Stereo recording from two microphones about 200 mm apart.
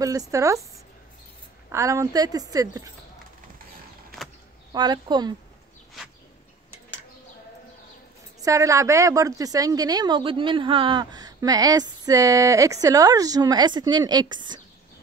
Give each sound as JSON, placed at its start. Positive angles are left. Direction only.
{"t": 0.0, "sound": "a woman's voice", "side_deg": -15}
{"t": 1.7, "sound": "a woman's voice", "side_deg": -15}
{"t": 4.7, "sound": "a woman's voice", "side_deg": -20}
{"t": 8.4, "sound": "a woman's voice", "side_deg": -15}